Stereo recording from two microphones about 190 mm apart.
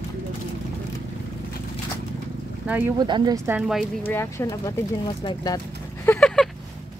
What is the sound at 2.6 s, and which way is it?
Speech, 10° right (ahead or behind).